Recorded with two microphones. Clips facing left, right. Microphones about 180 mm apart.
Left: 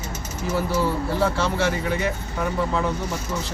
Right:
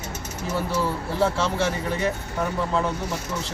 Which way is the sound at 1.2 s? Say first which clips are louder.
Right 1 dB; centre (ahead or behind).